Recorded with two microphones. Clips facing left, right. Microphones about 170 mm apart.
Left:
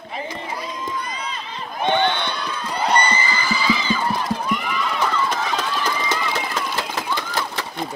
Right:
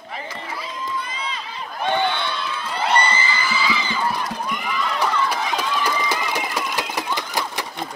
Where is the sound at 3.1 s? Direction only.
40° left (ahead or behind).